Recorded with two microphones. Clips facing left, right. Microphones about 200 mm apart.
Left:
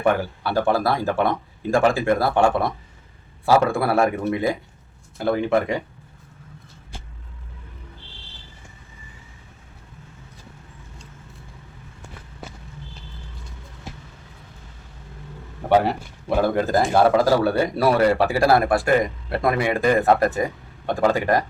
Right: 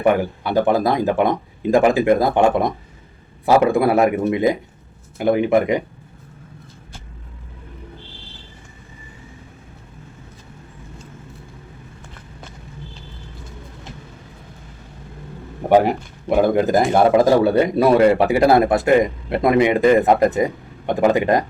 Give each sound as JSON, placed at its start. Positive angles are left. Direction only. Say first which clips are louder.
{"t": 0.0, "sound": "speech", "louder": "right 4 dB", "side_deg": -15}
{"t": 15.7, "sound": "speech", "louder": "right 4 dB", "side_deg": -15}